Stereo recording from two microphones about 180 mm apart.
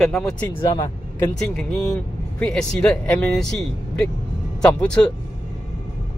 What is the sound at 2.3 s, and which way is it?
Speech, 5° left (ahead or behind).